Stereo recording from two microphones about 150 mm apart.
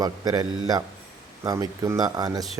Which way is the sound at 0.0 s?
25° right (ahead or behind).